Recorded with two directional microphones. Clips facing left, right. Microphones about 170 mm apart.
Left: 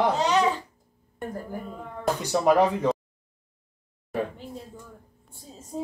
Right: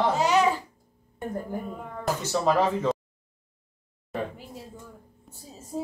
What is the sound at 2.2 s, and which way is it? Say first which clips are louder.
Speech: left 3 dB; 15° left (ahead or behind).